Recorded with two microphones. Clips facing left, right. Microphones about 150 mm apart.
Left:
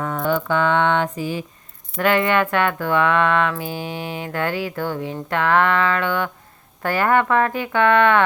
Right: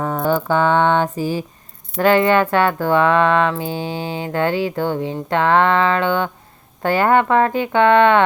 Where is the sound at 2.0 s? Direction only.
30° right (ahead or behind).